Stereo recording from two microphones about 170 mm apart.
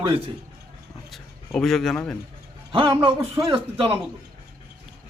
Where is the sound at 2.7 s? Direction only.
30° right (ahead or behind).